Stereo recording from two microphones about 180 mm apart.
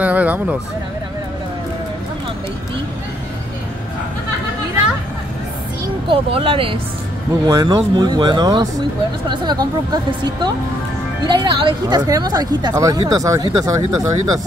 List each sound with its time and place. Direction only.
0.0 s speech: 10° right (ahead or behind)
6.0 s a woman's voice: 30° right (ahead or behind)